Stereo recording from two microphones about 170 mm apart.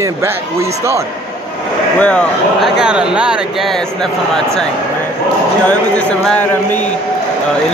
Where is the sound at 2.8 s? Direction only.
5° right (ahead or behind).